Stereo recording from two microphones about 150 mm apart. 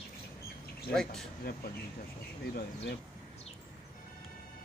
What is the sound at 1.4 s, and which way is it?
Speech, 90° left.